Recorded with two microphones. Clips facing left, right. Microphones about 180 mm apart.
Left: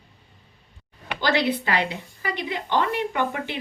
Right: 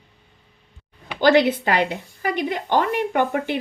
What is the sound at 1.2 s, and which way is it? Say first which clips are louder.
A woman's voice: right 7 dB; 50° right (ahead or behind).